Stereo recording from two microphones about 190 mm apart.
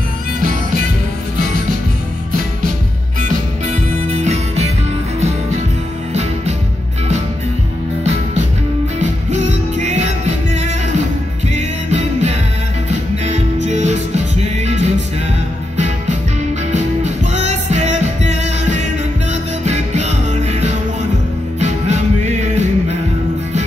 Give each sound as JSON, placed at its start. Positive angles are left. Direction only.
{"t": 0.4, "sound": "music", "side_deg": -45}
{"t": 3.2, "sound": "music", "side_deg": -40}
{"t": 8.0, "sound": "music", "side_deg": -35}
{"t": 16.7, "sound": "music", "side_deg": -35}